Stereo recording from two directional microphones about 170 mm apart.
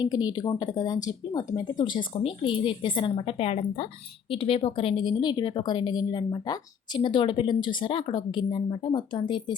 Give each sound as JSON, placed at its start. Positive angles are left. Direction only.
{"t": 0.0, "sound": "a woman's voice", "side_deg": 25}